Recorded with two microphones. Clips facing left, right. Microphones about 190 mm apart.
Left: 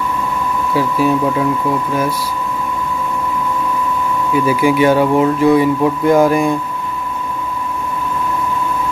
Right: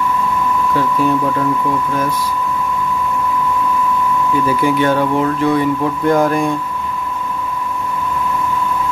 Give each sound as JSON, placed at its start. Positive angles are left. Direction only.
{"t": 0.7, "sound": "speech", "side_deg": 5}
{"t": 4.5, "sound": "speech", "side_deg": 10}